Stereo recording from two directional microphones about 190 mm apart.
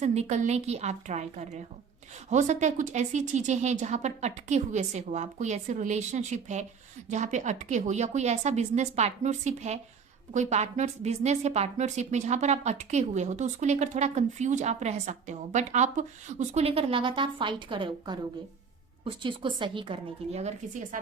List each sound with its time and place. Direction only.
0.0 s a woman's voice: 35° right (ahead or behind)